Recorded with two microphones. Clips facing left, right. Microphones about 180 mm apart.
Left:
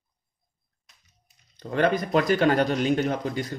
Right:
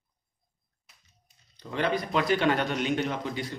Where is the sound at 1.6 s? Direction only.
50° left (ahead or behind).